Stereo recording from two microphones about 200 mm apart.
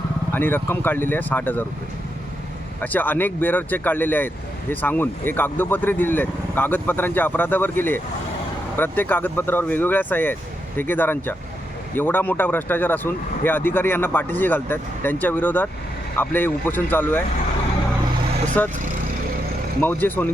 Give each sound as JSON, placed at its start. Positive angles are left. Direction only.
{"t": 0.3, "sound": "speech", "side_deg": 10}
{"t": 2.8, "sound": "speech", "side_deg": 10}
{"t": 18.6, "sound": "speech", "side_deg": 10}
{"t": 19.8, "sound": "speech", "side_deg": 10}